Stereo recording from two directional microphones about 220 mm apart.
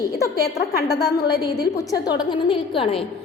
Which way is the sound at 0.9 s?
15° left (ahead or behind).